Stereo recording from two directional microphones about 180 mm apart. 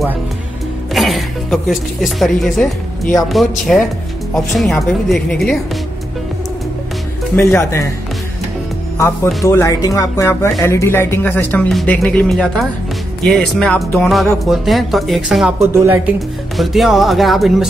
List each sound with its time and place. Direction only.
0.9 s speech: centre (ahead or behind)
7.3 s speech: 15° left (ahead or behind)
8.9 s speech: 15° left (ahead or behind); by 16.0 s 10° right (ahead or behind)
16.5 s speech: centre (ahead or behind)